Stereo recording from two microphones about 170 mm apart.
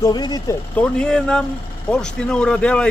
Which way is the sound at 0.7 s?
5° left (ahead or behind).